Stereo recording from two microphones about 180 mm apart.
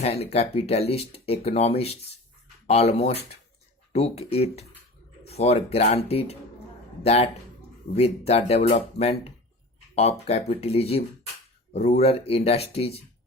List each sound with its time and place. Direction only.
0.0 s speech: 35° left (ahead or behind)